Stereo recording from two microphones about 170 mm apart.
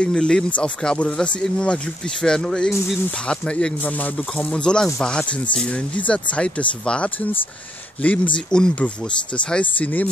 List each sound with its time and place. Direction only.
0.0 s speech: 5° left (ahead or behind)